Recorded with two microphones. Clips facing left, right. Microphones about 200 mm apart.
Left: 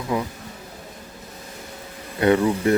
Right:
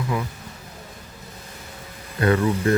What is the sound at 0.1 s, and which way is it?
Speech, 20° left (ahead or behind).